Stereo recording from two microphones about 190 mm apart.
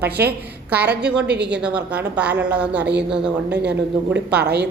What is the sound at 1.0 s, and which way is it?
A woman's voice, 5° right (ahead or behind).